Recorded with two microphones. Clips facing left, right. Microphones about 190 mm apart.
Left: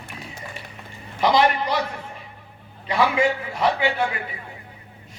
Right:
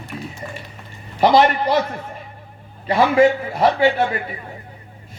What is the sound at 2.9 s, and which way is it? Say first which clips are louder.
A man's voice: right 6 dB; 40° right (ahead or behind).